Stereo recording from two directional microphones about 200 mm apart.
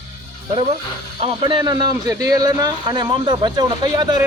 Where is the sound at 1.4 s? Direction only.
25° right (ahead or behind).